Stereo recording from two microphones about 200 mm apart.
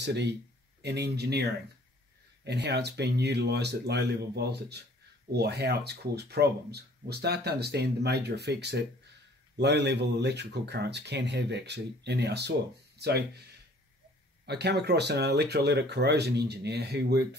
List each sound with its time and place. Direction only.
0.0 s speech: 60° right (ahead or behind)